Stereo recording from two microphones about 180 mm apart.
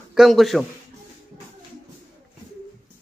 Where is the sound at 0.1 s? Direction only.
Centre (ahead or behind).